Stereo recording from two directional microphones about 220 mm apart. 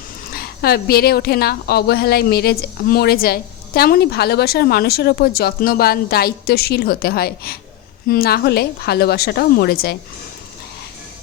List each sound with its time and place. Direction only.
0.3 s a woman's voice: 45° left (ahead or behind)